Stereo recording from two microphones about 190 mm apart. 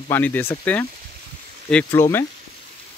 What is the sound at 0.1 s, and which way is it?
Speech, 10° left (ahead or behind).